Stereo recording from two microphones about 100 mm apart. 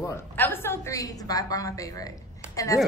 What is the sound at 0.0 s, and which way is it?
A woman's voice, 25° left (ahead or behind).